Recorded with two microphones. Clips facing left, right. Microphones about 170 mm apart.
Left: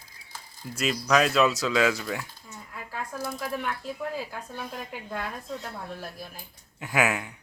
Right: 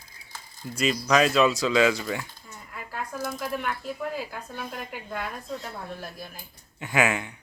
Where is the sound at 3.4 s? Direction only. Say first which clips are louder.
Right 1 dB; centre (ahead or behind).